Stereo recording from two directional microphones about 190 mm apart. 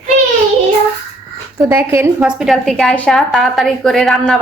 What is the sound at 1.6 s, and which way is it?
A woman's voice, 15° right (ahead or behind).